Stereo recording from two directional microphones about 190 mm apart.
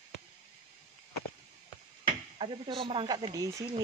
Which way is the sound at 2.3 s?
30° right (ahead or behind).